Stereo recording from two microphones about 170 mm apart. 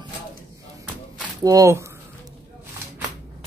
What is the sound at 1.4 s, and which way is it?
Speech, 20° right (ahead or behind).